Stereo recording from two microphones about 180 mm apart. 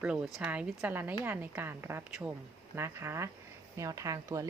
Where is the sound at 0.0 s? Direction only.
5° right (ahead or behind).